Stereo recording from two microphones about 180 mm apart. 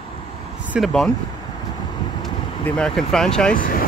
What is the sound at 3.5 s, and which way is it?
Speech, 50° left (ahead or behind).